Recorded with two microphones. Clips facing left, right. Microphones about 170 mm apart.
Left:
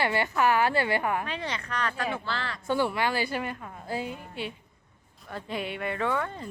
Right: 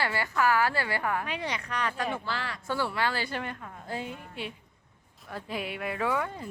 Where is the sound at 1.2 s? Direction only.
15° right (ahead or behind).